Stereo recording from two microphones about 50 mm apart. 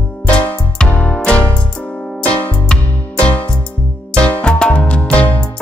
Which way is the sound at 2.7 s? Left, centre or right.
Left.